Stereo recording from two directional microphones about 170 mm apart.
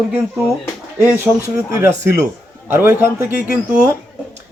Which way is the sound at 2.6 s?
10° right (ahead or behind).